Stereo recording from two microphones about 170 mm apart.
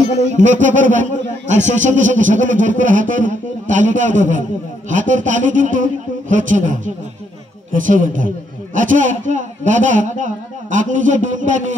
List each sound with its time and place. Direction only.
0.3 s a man's voice: 45° right (ahead or behind)